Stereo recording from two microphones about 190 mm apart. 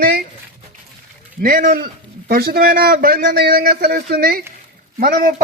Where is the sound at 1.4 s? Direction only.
45° right (ahead or behind).